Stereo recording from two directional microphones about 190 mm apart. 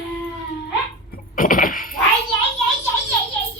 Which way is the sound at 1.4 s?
45° left (ahead or behind).